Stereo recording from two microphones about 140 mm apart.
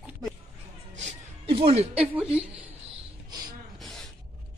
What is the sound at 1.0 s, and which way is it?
Music, 40° right (ahead or behind).